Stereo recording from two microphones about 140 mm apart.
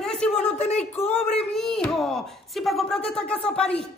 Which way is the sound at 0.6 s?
50° left (ahead or behind).